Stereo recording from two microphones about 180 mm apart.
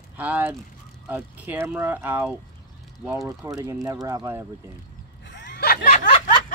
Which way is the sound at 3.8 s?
20° right (ahead or behind).